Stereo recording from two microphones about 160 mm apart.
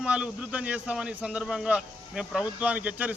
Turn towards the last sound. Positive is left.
turn(degrees=-10)  # may be behind; listen again after turning